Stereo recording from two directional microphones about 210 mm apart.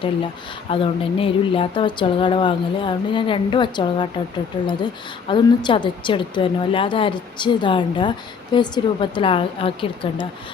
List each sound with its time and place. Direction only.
0.7 s speech: 25° left (ahead or behind)